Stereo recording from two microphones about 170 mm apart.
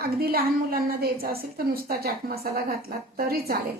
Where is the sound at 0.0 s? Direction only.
65° right (ahead or behind).